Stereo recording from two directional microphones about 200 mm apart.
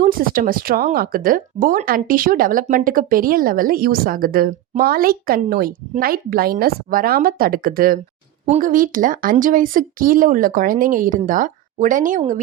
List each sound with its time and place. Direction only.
0.0 s speech: 45° right (ahead or behind)